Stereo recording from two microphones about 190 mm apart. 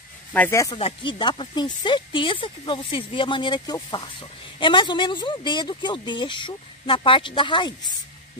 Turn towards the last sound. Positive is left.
turn(degrees=25)  # may be behind; listen again after turning